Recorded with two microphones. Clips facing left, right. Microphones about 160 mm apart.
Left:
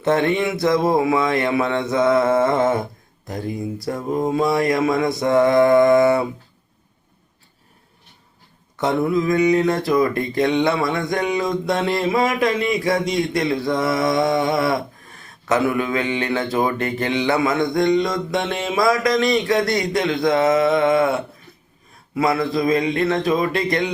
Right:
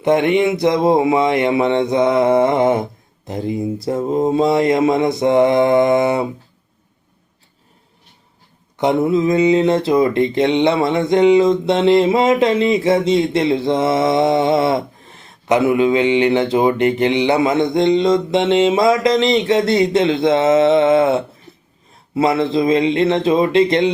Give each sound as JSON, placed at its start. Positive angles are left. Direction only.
{"t": 0.0, "sound": "speech", "side_deg": -15}
{"t": 8.7, "sound": "speech", "side_deg": -20}